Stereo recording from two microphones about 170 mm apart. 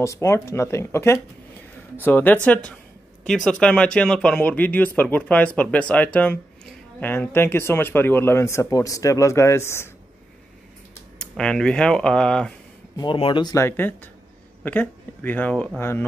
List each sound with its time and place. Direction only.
0.0 s speech: 15° left (ahead or behind)
11.1 s speech: 5° left (ahead or behind)
12.9 s speech: 30° left (ahead or behind); by 16.0 s 10° left (ahead or behind)